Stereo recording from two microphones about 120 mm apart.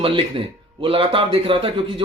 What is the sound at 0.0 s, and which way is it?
A man's voice, 50° right (ahead or behind).